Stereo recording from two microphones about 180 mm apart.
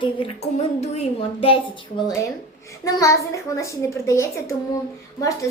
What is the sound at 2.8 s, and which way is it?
A child's voice, 20° left (ahead or behind).